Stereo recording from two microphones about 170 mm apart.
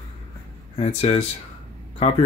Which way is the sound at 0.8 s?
35° left (ahead or behind).